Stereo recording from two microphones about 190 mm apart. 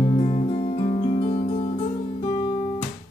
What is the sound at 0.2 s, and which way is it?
Music, 35° left (ahead or behind).